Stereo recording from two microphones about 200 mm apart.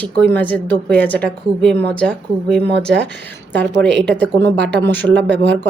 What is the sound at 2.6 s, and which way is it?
Speech, 55° right (ahead or behind).